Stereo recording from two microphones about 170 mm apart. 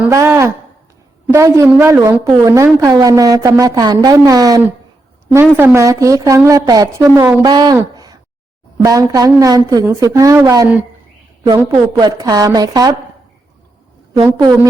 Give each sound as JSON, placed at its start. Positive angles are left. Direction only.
{"t": 0.0, "sound": "a woman's voice", "side_deg": -15}
{"t": 14.4, "sound": "a woman's voice", "side_deg": -20}